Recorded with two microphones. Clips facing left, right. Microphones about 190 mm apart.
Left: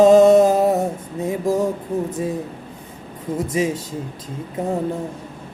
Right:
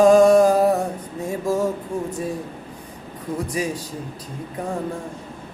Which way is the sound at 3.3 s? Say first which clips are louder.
Left 4 dB; 25° left (ahead or behind).